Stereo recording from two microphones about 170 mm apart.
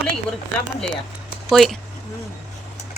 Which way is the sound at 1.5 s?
Centre (ahead or behind).